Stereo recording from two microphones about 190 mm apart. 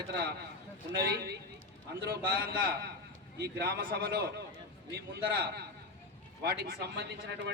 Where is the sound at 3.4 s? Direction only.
60° right (ahead or behind).